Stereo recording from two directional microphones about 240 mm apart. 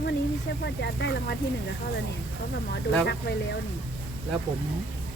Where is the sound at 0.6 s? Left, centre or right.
Left.